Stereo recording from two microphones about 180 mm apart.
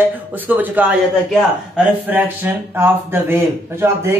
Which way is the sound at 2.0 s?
10° right (ahead or behind).